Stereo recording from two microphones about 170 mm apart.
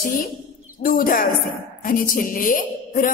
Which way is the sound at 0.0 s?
55° left (ahead or behind).